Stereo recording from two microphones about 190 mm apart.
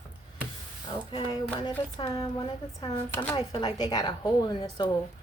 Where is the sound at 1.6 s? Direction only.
20° left (ahead or behind).